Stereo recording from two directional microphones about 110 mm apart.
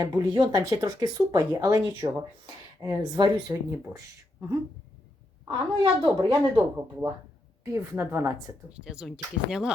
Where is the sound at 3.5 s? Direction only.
25° right (ahead or behind).